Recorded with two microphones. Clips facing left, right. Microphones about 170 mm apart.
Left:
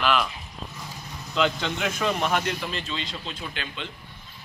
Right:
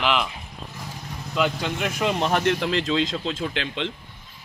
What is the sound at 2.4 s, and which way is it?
Speech, 70° right (ahead or behind).